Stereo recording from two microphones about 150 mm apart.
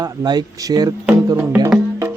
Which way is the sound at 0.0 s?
25° right (ahead or behind).